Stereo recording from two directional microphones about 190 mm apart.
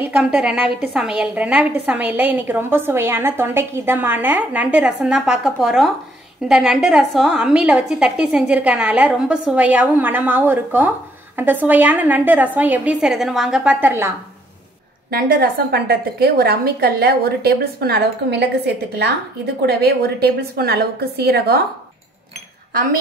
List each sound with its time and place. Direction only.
0.0 s a woman's voice: 5° right (ahead or behind)
15.0 s a woman's voice: 50° right (ahead or behind)